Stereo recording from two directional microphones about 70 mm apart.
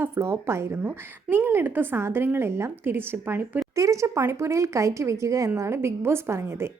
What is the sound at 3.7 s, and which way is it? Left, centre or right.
A woman's voice, right.